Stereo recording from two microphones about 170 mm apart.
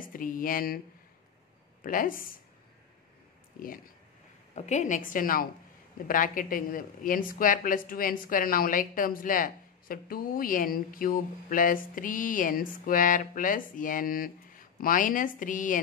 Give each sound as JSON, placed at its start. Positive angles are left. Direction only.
{"t": 0.0, "sound": "speech", "side_deg": 55}
{"t": 1.8, "sound": "speech", "side_deg": 55}
{"t": 3.5, "sound": "speech", "side_deg": 55}
{"t": 4.6, "sound": "a woman's voice", "side_deg": 45}